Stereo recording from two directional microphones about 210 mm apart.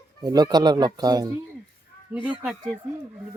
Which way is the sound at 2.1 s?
5° right (ahead or behind).